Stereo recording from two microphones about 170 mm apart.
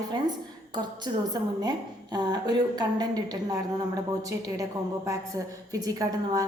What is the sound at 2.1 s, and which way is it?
A woman's voice, 25° right (ahead or behind).